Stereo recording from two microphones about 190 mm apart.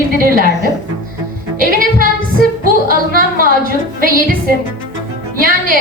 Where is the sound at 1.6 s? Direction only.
50° right (ahead or behind).